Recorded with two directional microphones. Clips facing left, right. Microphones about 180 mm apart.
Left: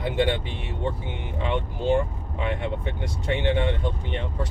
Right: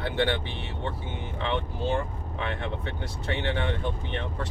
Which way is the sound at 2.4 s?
15° left (ahead or behind).